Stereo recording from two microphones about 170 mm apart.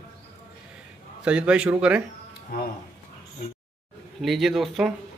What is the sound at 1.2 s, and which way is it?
Speech, 5° right (ahead or behind).